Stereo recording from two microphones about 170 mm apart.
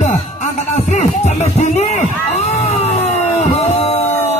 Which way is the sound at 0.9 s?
45° left (ahead or behind).